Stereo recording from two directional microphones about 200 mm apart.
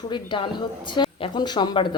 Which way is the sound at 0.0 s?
25° left (ahead or behind).